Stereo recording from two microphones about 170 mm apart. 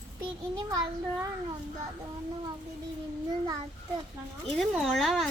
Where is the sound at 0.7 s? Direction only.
20° right (ahead or behind).